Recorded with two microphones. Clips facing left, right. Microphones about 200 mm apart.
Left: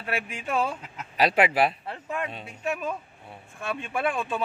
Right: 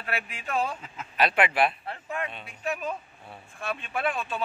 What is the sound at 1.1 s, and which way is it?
A man's voice, 35° left (ahead or behind).